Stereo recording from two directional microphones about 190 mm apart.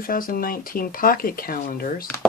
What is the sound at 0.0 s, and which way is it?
Speech, 50° left (ahead or behind).